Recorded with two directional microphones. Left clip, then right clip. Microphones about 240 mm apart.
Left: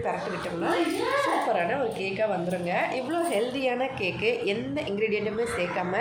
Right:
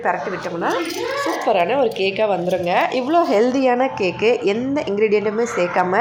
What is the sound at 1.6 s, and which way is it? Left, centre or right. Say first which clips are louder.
A woman's voice: right 10 dB; right.